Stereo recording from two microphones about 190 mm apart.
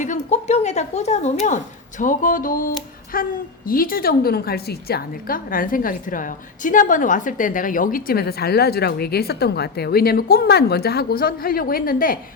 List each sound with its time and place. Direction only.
0.0 s a woman's voice: 40° left (ahead or behind)